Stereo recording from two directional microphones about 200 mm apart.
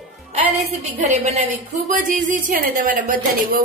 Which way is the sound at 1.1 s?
35° right (ahead or behind).